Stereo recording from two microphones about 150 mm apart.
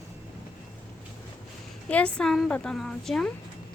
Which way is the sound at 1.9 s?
5° left (ahead or behind).